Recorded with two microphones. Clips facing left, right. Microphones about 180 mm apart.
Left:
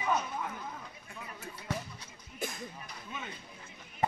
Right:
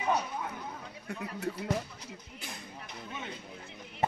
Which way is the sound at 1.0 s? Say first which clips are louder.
Right 10 dB; 70° right (ahead or behind).